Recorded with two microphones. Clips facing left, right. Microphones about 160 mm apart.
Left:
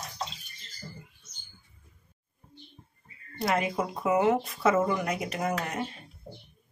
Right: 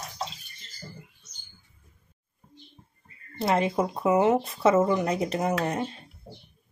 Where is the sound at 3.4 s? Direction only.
30° right (ahead or behind).